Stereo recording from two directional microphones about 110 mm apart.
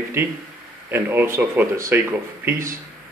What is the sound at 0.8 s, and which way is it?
A man's voice, 20° right (ahead or behind).